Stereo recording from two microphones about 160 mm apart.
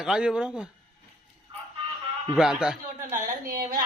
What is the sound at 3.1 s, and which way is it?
Speech, 60° right (ahead or behind).